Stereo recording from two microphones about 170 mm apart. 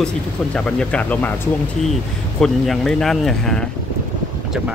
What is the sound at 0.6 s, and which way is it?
Speech, 5° left (ahead or behind).